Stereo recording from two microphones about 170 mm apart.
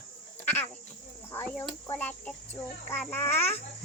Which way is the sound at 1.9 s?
10° left (ahead or behind).